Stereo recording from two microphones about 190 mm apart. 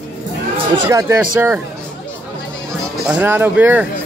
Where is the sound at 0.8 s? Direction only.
15° right (ahead or behind).